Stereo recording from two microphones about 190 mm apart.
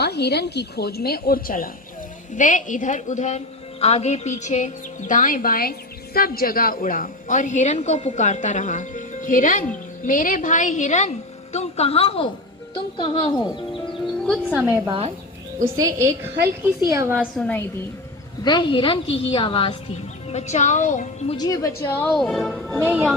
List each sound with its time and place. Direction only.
0.0 s a woman's voice: 60° left (ahead or behind); by 13.5 s 25° left (ahead or behind)
14.3 s speech: 5° right (ahead or behind)
14.8 s speech: 30° right (ahead or behind)
15.7 s a woman's voice: 15° right (ahead or behind)
17.3 s speech: 5° left (ahead or behind)
18.4 s a woman's voice: 20° left (ahead or behind); by 21.3 s 40° left (ahead or behind)
21.3 s a woman's voice: 20° left (ahead or behind); by 23.1 s 5° right (ahead or behind)